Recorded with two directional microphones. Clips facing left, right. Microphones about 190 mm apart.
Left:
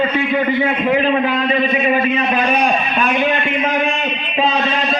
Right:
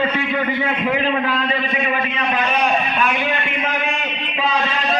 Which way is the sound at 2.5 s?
15° left (ahead or behind).